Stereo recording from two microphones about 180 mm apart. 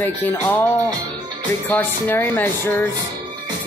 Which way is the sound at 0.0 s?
10° left (ahead or behind).